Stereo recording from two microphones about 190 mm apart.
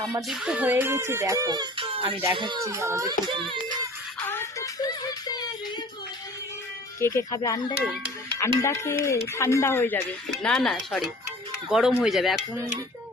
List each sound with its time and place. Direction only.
0.2 s speech: centre (ahead or behind); by 2.1 s 25° right (ahead or behind)
2.3 s music: 25° right (ahead or behind)
4.3 s music: 10° left (ahead or behind)
7.0 s speech: 15° left (ahead or behind); by 12.5 s centre (ahead or behind)